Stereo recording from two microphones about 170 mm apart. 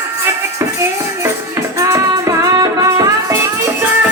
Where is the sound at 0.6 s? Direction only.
15° right (ahead or behind).